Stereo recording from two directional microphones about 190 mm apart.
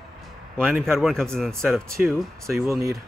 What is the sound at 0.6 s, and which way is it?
Speech, 10° right (ahead or behind).